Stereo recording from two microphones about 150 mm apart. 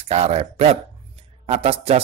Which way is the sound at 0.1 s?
45° right (ahead or behind).